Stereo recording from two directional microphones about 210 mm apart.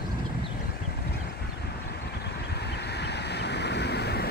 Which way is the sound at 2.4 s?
50° left (ahead or behind).